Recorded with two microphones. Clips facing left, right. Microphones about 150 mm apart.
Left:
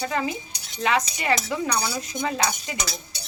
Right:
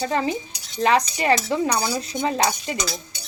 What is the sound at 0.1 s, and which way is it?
Speech, 35° right (ahead or behind).